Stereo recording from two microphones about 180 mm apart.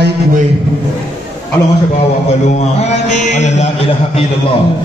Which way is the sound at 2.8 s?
40° left (ahead or behind).